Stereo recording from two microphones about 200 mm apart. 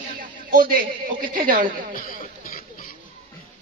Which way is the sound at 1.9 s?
45° left (ahead or behind).